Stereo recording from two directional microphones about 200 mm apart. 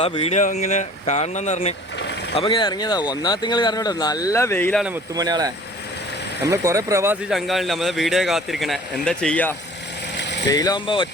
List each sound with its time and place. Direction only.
0.0 s speech: 30° left (ahead or behind); by 4.8 s 10° left (ahead or behind)
5.1 s speech: 20° right (ahead or behind)
6.5 s speech: 15° right (ahead or behind); by 9.6 s 5° left (ahead or behind)
10.2 s vehicle: 60° left (ahead or behind)
10.5 s speech: 20° left (ahead or behind)